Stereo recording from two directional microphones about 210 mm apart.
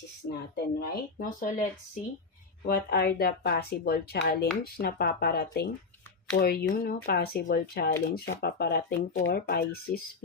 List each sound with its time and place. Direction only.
0.5 s speech: 45° left (ahead or behind)
2.6 s speech: 50° left (ahead or behind)